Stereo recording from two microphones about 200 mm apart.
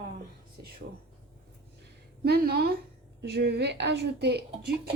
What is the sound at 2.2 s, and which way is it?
A woman's voice, 55° right (ahead or behind).